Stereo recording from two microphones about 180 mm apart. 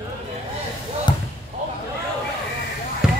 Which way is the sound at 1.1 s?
25° left (ahead or behind).